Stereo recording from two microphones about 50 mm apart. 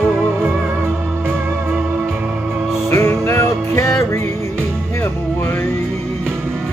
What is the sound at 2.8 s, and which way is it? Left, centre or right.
Music, left.